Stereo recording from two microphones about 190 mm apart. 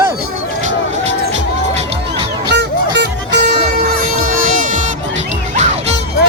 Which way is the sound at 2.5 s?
65° right (ahead or behind).